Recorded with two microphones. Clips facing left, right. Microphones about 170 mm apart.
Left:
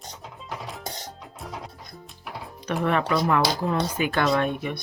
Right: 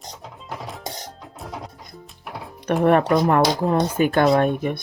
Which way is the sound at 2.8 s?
50° right (ahead or behind).